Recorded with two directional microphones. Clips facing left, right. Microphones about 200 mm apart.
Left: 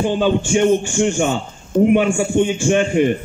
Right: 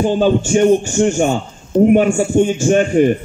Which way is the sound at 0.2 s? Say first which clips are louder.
Right 3 dB; 40° right (ahead or behind).